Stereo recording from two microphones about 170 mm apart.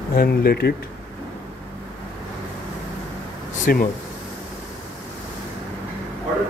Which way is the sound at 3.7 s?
60° left (ahead or behind).